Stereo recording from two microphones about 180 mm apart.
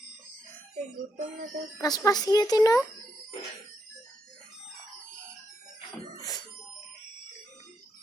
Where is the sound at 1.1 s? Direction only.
50° right (ahead or behind).